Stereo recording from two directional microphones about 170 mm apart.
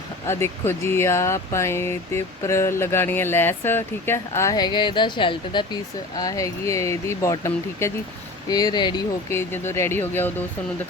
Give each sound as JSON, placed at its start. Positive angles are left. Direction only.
{"t": 0.3, "sound": "speech", "side_deg": 15}
{"t": 9.3, "sound": "speech", "side_deg": 15}